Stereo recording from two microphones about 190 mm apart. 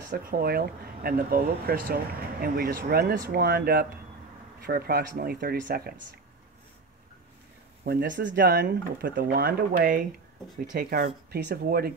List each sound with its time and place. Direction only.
0.1 s speech: 50° right (ahead or behind)
7.8 s speech: 55° right (ahead or behind)